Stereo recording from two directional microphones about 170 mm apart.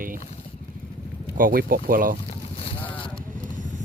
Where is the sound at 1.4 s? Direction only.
55° right (ahead or behind).